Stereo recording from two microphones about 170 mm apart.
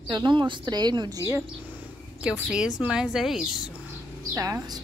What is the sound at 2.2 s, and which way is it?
Speech, 5° right (ahead or behind).